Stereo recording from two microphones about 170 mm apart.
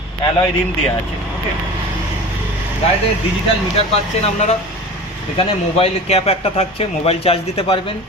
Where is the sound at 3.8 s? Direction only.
35° left (ahead or behind).